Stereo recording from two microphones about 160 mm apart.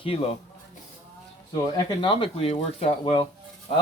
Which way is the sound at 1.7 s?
35° left (ahead or behind).